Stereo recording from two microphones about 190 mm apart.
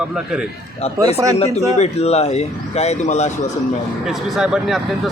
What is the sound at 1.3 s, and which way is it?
Speech, 35° left (ahead or behind).